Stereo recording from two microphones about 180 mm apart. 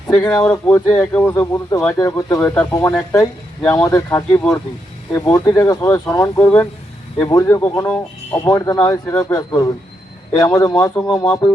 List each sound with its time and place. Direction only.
0.2 s speech: 10° left (ahead or behind)